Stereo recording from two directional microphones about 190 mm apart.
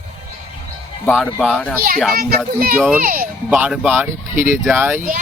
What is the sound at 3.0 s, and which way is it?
Speech, 50° right (ahead or behind).